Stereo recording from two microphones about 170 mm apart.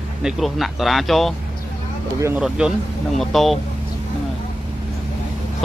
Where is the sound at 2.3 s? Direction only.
5° right (ahead or behind).